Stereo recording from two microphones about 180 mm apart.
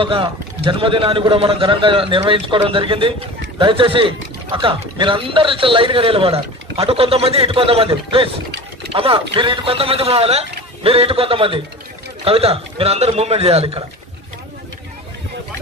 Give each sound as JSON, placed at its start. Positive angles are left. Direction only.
{"t": 0.0, "sound": "a man's voice", "side_deg": -30}